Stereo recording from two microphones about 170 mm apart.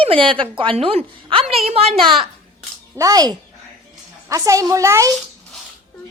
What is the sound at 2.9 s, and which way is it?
A child's voice, 20° right (ahead or behind).